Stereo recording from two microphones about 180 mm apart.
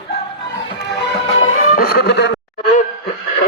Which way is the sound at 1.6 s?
50° left (ahead or behind).